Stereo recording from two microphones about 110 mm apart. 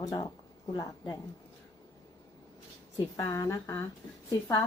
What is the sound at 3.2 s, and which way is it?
Speech, 30° left (ahead or behind).